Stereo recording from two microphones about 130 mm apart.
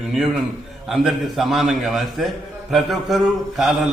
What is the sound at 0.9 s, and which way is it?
A man's voice, centre (ahead or behind).